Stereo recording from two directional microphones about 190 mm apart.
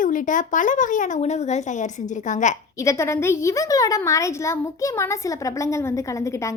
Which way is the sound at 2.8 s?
15° left (ahead or behind).